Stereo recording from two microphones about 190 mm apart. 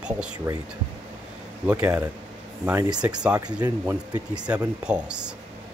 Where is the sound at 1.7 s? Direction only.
5° right (ahead or behind).